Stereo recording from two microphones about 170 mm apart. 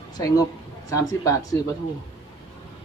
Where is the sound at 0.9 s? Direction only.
20° left (ahead or behind).